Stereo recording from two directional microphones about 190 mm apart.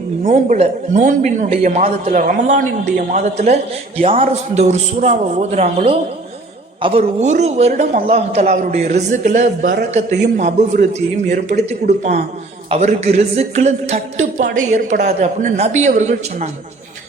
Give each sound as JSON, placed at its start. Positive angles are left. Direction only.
{"t": 0.3, "sound": "a man's voice", "side_deg": -40}